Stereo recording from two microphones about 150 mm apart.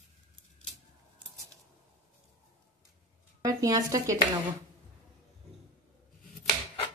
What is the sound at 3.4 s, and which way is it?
Speech, 25° right (ahead or behind).